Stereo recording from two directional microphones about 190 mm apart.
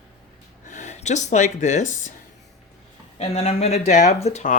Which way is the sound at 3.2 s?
35° left (ahead or behind).